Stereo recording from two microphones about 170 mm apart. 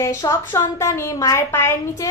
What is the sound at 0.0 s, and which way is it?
A woman's voice, 20° left (ahead or behind).